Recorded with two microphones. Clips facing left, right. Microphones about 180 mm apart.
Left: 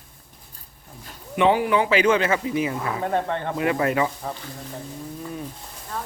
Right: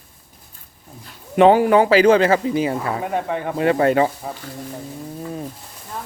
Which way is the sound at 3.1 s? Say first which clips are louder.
Right 1 dB; 10° right (ahead or behind).